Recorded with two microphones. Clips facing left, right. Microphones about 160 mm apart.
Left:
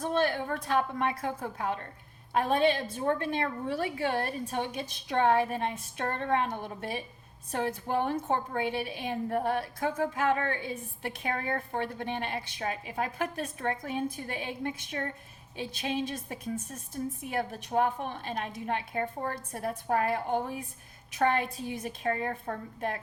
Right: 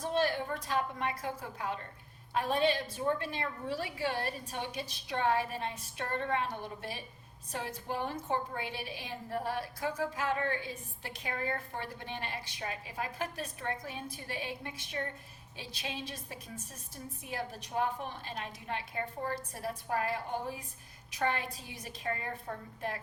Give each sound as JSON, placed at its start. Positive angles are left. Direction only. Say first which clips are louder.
{"t": 0.0, "sound": "a woman's voice", "louder": "left 3 dB", "side_deg": 55}